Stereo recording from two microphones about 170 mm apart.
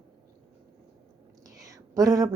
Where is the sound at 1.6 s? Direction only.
20° right (ahead or behind).